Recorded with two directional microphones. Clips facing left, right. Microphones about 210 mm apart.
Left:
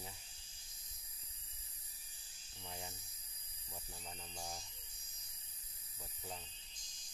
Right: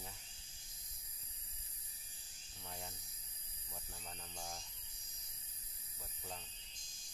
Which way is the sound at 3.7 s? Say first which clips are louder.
Left 1 dB; 10° left (ahead or behind).